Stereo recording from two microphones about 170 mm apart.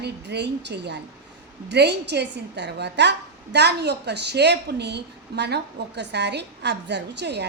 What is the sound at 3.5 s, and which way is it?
A woman's voice, 80° right.